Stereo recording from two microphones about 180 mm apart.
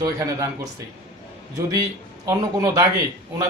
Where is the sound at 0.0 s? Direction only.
20° right (ahead or behind).